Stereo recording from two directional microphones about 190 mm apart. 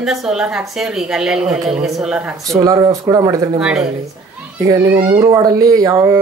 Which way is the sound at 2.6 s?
20° right (ahead or behind).